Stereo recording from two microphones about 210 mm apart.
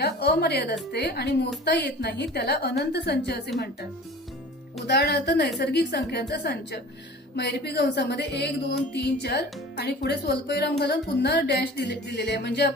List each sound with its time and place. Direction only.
0.0 s speech: 50° left (ahead or behind)
4.9 s speech: 50° left (ahead or behind)